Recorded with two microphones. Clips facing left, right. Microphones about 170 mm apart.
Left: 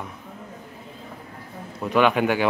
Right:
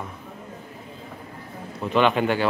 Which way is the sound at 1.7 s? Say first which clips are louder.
Left 1 dB; 5° left (ahead or behind).